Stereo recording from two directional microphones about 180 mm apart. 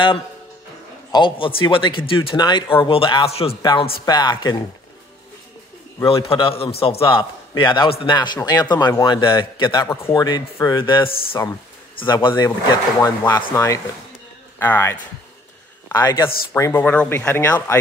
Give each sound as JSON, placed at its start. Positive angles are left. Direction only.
{"t": 1.1, "sound": "speech", "side_deg": 25}
{"t": 6.0, "sound": "a man's voice", "side_deg": 30}
{"t": 15.9, "sound": "speech", "side_deg": 20}